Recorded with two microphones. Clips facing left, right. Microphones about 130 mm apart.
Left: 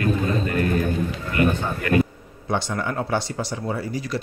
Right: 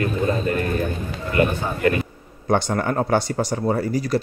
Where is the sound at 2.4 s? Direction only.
45° right (ahead or behind).